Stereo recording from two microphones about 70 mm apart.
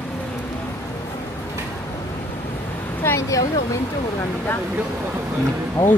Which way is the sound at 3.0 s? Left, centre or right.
Left.